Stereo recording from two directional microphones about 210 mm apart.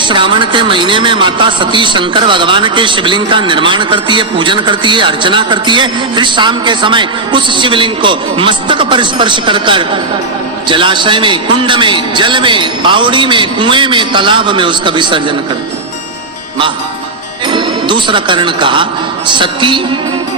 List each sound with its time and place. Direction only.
0.0 s speech: 20° right (ahead or behind)
17.5 s speech: 20° right (ahead or behind)